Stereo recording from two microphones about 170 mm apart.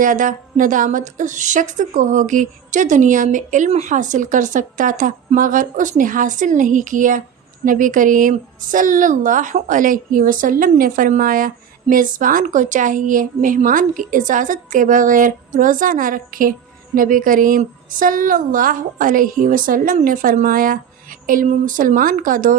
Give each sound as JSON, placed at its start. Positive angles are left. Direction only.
{"t": 0.0, "sound": "a woman's voice", "side_deg": -50}